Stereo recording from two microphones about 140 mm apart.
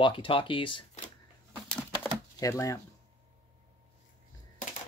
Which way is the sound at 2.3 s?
25° left (ahead or behind).